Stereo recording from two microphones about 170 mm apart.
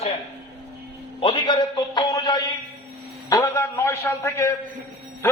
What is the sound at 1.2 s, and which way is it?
A man's voice, 30° left (ahead or behind).